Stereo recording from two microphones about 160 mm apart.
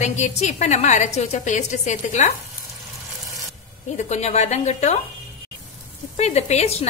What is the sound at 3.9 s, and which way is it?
A woman's voice, 45° left (ahead or behind).